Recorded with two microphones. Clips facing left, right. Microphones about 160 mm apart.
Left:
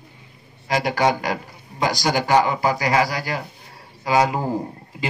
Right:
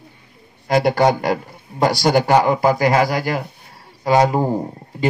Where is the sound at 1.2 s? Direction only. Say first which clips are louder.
Right 5 dB; 55° right (ahead or behind).